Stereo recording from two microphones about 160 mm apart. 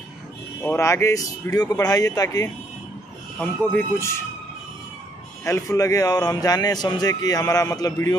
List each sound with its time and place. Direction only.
0.6 s a man's voice: 15° left (ahead or behind)
3.3 s speech: 10° left (ahead or behind)
5.4 s a man's voice: 20° left (ahead or behind)